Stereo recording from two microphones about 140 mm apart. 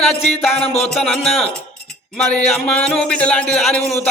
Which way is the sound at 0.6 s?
45° left (ahead or behind).